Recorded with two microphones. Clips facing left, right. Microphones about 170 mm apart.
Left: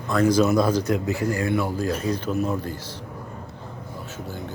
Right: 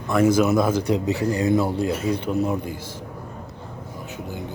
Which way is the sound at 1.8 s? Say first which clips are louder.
Right 2 dB; 10° right (ahead or behind).